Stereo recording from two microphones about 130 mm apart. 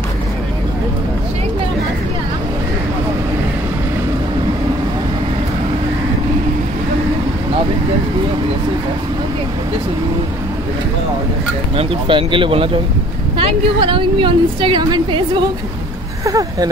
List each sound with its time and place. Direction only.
11.7 s a woman's voice: 40° right (ahead or behind)
16.3 s speech: 25° right (ahead or behind)